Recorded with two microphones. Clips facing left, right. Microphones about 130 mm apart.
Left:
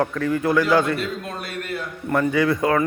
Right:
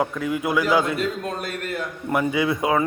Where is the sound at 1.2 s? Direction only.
40° right (ahead or behind).